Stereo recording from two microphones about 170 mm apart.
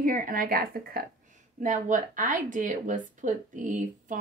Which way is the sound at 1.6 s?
50° right (ahead or behind).